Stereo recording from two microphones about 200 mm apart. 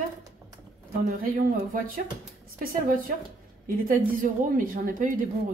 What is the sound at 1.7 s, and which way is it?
Speech, 45° right (ahead or behind).